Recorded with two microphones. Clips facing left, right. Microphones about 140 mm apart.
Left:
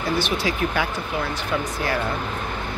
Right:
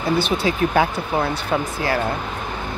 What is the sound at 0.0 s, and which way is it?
Speech, 25° right (ahead or behind).